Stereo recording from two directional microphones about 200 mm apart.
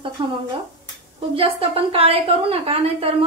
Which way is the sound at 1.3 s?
30° right (ahead or behind).